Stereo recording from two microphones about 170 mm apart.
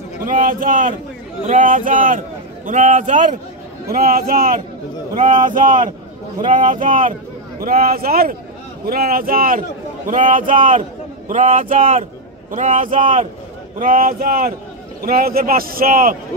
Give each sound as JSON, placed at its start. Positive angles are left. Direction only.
{"t": 0.2, "sound": "a man's voice", "side_deg": -55}
{"t": 3.9, "sound": "a man's voice", "side_deg": -60}